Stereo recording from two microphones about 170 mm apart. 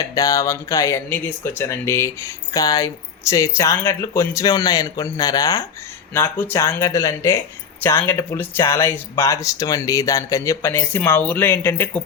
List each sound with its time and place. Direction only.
0.1 s speech: 20° left (ahead or behind)